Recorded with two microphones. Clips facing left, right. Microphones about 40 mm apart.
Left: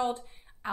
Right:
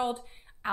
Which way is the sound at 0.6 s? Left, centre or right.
Right.